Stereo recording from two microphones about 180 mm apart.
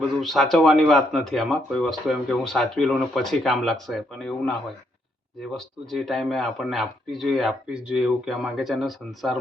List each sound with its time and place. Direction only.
0.2 s speech: centre (ahead or behind)
5.5 s speech: centre (ahead or behind)